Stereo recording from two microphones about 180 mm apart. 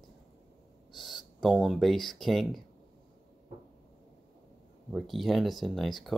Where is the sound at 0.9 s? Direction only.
Centre (ahead or behind).